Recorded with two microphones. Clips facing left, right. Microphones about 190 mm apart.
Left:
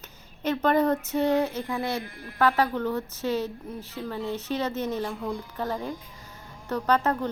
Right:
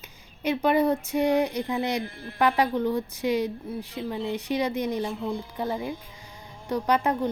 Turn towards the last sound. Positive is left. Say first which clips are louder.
# even
turn(degrees=-10)  # may be behind; listen again after turning